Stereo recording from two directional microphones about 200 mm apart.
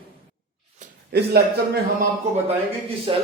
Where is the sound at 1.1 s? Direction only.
55° right (ahead or behind).